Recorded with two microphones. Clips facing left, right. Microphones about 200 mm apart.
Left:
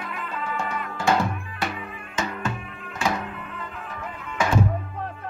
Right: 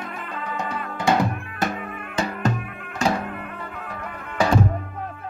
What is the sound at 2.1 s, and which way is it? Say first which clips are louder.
Music: right 5 dB; 35° right (ahead or behind).